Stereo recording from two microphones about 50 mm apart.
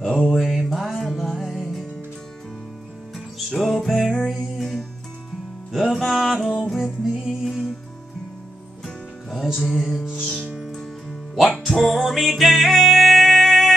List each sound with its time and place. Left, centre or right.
0.3 s music: centre
3.3 s music: centre
8.8 s music: centre
10.7 s music: centre